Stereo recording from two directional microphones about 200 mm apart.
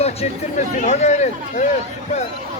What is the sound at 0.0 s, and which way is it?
Speech, 35° left (ahead or behind).